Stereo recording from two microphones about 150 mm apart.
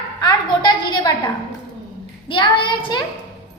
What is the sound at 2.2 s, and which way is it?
Child singing, 35° left (ahead or behind).